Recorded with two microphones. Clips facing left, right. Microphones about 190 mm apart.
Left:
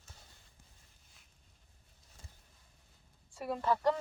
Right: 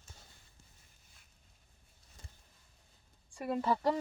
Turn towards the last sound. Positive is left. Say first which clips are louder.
# even
turn(degrees=-10)  # may be behind; listen again after turning